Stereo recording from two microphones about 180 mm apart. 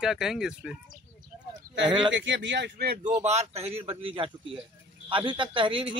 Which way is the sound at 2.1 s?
90° right.